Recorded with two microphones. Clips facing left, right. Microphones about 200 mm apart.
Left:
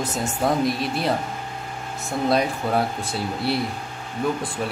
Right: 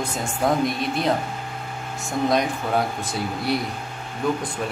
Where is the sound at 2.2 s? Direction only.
5° left (ahead or behind).